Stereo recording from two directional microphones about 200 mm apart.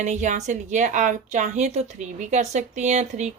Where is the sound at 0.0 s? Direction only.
40° right (ahead or behind).